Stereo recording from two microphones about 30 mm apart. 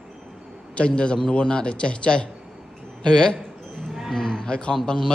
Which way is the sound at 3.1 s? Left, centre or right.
Left.